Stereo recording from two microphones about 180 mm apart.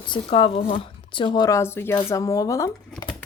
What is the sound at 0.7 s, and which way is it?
Speech, 25° left (ahead or behind).